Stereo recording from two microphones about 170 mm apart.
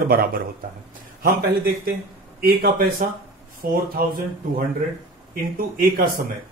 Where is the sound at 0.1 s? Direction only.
60° right (ahead or behind).